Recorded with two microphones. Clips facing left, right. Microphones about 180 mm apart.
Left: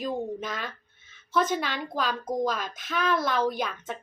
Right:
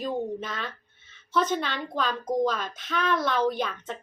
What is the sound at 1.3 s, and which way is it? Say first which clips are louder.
A woman's voice: even; 10° left (ahead or behind).